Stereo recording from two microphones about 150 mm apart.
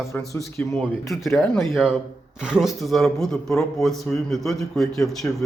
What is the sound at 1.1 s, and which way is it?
A man's voice, centre (ahead or behind).